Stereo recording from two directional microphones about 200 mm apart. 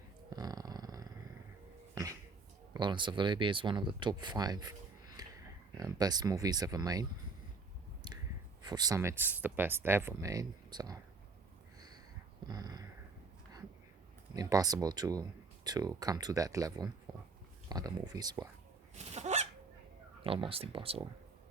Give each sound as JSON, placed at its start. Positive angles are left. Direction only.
{"t": 0.3, "sound": "purr", "side_deg": -20}
{"t": 2.7, "sound": "speech", "side_deg": -25}
{"t": 5.2, "sound": "a sound", "side_deg": -20}
{"t": 5.7, "sound": "speech", "side_deg": -20}
{"t": 8.6, "sound": "speech", "side_deg": -20}
{"t": 12.5, "sound": "a sound", "side_deg": -20}
{"t": 14.3, "sound": "speech", "side_deg": -20}
{"t": 18.9, "sound": "a sound", "side_deg": -35}
{"t": 20.2, "sound": "speech", "side_deg": -25}